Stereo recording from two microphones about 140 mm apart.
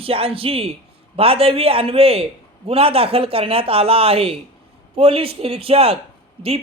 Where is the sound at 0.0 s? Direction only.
40° right (ahead or behind).